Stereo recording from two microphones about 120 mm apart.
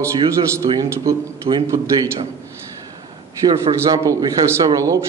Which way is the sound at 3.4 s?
30° right (ahead or behind).